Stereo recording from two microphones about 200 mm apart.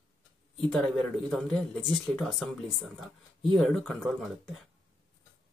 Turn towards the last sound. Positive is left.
turn(degrees=0)  # may be behind; listen again after turning